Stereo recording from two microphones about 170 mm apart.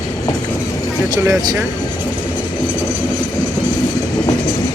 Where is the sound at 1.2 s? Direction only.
20° right (ahead or behind).